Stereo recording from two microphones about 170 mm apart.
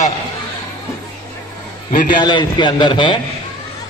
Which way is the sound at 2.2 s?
25° left (ahead or behind).